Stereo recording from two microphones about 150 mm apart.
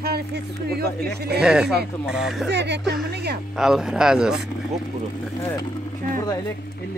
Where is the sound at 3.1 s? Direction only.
90° right.